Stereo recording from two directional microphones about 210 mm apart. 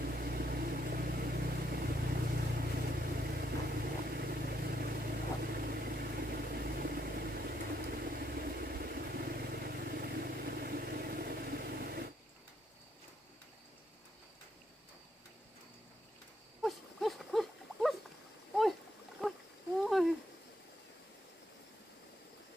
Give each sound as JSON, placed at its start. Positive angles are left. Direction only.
{"t": 0.0, "sound": "vehicle", "side_deg": -45}
{"t": 16.6, "sound": "dog", "side_deg": 0}
{"t": 19.2, "sound": "a sound", "side_deg": 0}